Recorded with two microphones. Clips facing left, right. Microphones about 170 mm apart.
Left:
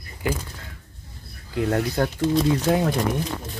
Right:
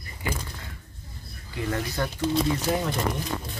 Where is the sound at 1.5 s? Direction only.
75° left (ahead or behind).